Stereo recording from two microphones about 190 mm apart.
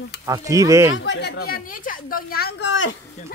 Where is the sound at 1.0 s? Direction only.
65° left (ahead or behind).